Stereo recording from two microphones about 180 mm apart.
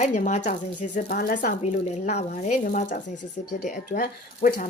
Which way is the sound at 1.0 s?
55° left (ahead or behind).